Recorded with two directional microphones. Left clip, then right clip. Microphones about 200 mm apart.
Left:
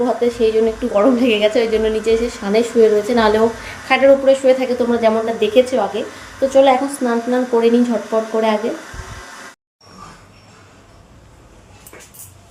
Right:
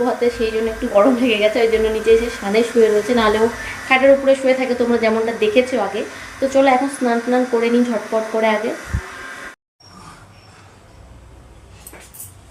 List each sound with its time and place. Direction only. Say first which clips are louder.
0.0 s a woman's voice: left 2 dB; 15° left (ahead or behind)